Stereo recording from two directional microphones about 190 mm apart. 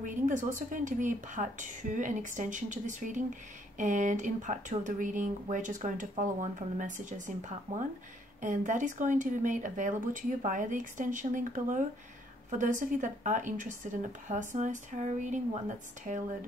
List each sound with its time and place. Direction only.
0.0 s speech: 40° right (ahead or behind)